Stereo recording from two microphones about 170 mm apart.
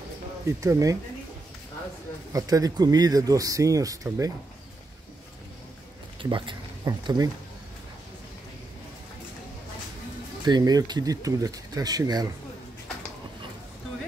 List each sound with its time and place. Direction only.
0.5 s speech: 20° right (ahead or behind)
2.3 s speech: 20° right (ahead or behind)
6.2 s speech: 25° right (ahead or behind)
10.4 s speech: 25° right (ahead or behind)